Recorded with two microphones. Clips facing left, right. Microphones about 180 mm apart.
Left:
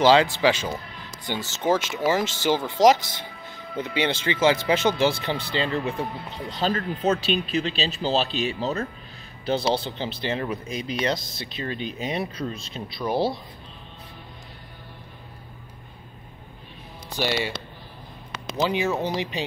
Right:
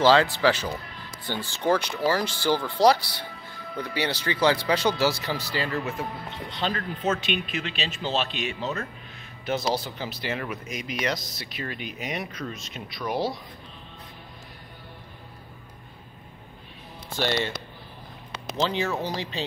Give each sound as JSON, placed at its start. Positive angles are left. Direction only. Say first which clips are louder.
{"t": 0.0, "sound": "speech", "louder": "left 2 dB", "side_deg": 15}
{"t": 6.5, "sound": "speech", "louder": "left 4 dB", "side_deg": 40}
{"t": 17.1, "sound": "speech", "louder": "even", "side_deg": 10}
{"t": 18.6, "sound": "speech", "louder": "left 3 dB", "side_deg": 15}